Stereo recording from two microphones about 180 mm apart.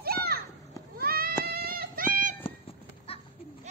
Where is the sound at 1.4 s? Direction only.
55° right (ahead or behind).